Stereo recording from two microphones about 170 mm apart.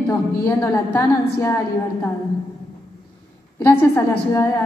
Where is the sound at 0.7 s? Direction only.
15° left (ahead or behind).